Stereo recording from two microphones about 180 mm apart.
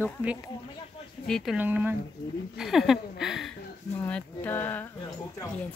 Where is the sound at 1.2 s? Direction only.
Centre (ahead or behind).